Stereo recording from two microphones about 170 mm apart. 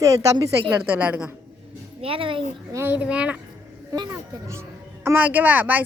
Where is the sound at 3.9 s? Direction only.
20° right (ahead or behind).